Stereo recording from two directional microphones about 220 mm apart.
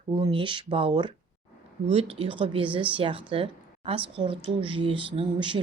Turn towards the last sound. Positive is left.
turn(degrees=-20)  # may be behind; listen again after turning